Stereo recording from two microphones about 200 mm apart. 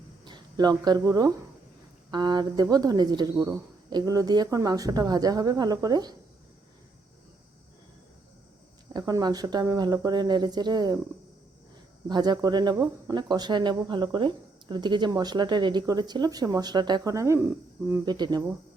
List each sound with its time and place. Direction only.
0.3 s speech: 20° right (ahead or behind)
8.9 s speech: 20° right (ahead or behind)
12.0 s speech: 20° right (ahead or behind)